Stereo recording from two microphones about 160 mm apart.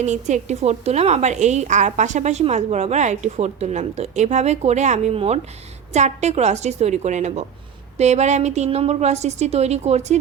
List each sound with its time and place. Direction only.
0.0 s a woman's voice: 50° right (ahead or behind)